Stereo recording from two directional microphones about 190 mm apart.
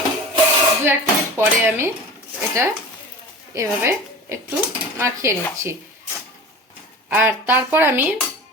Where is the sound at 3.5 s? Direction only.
15° right (ahead or behind).